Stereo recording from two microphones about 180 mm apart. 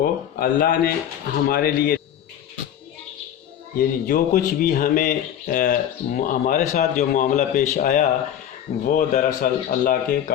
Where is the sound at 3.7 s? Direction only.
50° left (ahead or behind).